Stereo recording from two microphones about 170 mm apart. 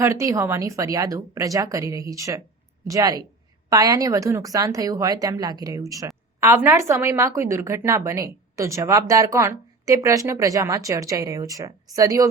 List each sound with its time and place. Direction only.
0.0 s a woman's voice: 15° right (ahead or behind)